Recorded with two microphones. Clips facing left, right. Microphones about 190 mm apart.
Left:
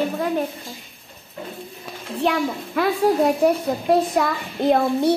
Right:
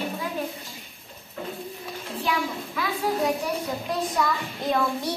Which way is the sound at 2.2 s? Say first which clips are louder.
Left 7 dB; 55° left (ahead or behind).